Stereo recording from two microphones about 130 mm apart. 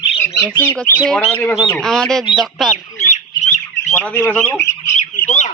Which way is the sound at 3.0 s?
60° left (ahead or behind).